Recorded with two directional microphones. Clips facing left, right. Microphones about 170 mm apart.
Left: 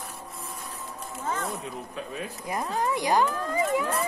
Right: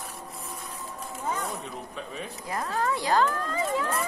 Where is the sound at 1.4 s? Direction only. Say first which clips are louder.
Left 1 dB; centre (ahead or behind).